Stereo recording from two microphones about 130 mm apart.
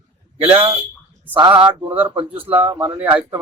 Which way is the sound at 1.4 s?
40° right (ahead or behind).